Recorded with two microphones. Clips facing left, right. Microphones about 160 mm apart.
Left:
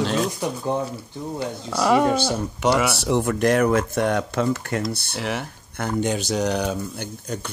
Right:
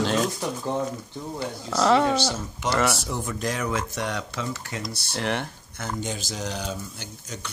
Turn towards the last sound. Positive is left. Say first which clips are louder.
# left 7 dB
turn(degrees=55)  # may be behind; listen again after turning